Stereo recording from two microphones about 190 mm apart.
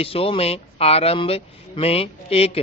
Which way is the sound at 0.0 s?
30° left (ahead or behind).